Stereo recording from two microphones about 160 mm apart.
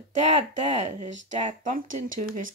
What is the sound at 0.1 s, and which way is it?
Speech, 45° right (ahead or behind).